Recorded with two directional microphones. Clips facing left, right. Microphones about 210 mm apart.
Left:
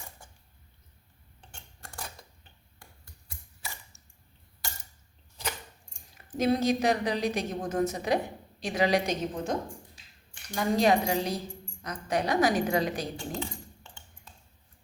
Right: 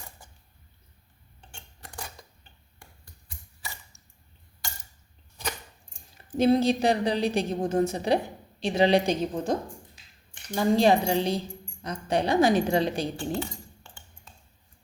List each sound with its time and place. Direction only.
6.3 s a woman's voice: 30° right (ahead or behind)
13.1 s speech: 5° right (ahead or behind)